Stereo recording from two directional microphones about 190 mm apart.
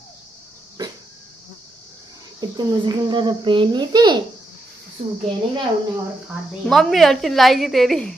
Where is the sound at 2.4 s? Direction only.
20° right (ahead or behind).